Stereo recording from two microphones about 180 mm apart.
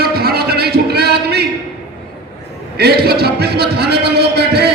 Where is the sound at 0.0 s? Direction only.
60° right (ahead or behind).